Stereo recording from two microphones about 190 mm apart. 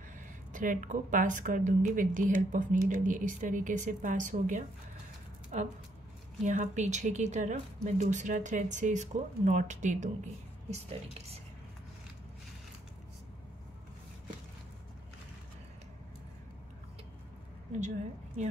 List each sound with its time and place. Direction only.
0.5 s speech: 45° right (ahead or behind)
17.7 s speech: 40° right (ahead or behind)